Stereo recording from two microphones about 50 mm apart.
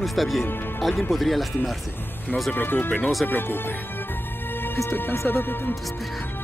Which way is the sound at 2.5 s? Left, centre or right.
Left.